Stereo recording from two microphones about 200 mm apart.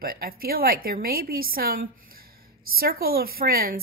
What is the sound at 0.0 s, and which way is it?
A woman's voice, 45° right (ahead or behind).